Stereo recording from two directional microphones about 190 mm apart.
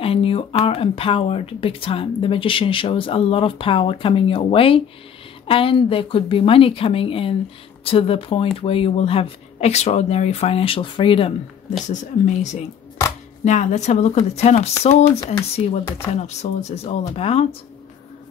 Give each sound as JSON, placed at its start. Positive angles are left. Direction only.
{"t": 0.0, "sound": "speech", "side_deg": 30}
{"t": 11.9, "sound": "speech", "side_deg": 40}